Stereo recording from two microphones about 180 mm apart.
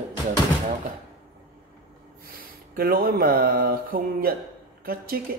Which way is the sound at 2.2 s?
55° right (ahead or behind).